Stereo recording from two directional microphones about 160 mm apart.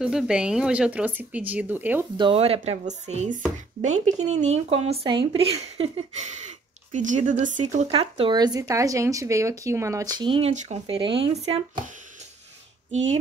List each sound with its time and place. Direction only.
0.0 s speech: 5° right (ahead or behind)
2.1 s speech: 35° right (ahead or behind)
8.4 s speech: 25° right (ahead or behind)